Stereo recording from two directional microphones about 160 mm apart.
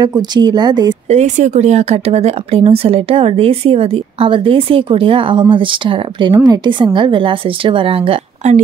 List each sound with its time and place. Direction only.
0.0 s a woman's voice: 25° right (ahead or behind)
1.0 s speech: 45° right (ahead or behind)